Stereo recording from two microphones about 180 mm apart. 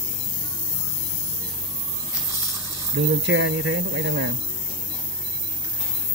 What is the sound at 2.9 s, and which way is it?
Speech, 90° right.